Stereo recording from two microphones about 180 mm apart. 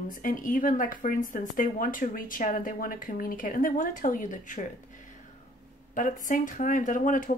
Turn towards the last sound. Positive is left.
turn(degrees=45)  # may be behind; listen again after turning